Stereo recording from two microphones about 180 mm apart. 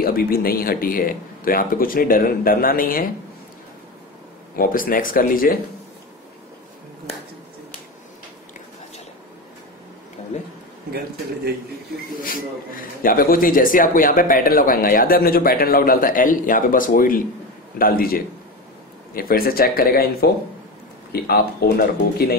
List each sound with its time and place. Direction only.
0.0 s a man's voice: 55° left (ahead or behind)
4.6 s a man's voice: 50° left (ahead or behind)
12.2 s a man's voice: 50° left (ahead or behind)